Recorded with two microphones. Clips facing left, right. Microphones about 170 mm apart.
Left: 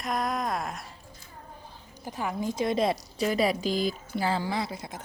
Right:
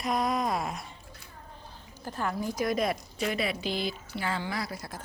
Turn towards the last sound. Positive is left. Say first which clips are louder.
# left 3 dB
turn(degrees=20)  # may be behind; listen again after turning